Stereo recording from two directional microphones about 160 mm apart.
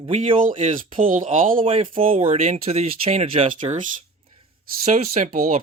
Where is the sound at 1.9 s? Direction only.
35° right (ahead or behind).